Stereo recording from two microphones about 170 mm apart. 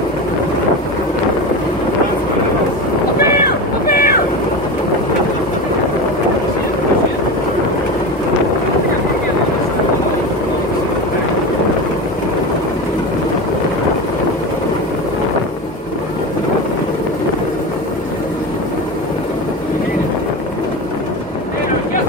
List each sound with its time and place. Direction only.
3.8 s vehicle: 60° left (ahead or behind)